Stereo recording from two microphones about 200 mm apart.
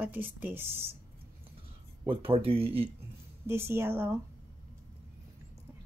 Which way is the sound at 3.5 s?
15° right (ahead or behind).